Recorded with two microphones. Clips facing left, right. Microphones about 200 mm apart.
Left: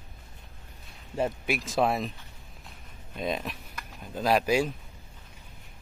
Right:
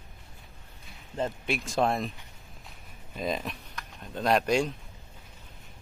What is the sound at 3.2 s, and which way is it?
Speech, centre (ahead or behind).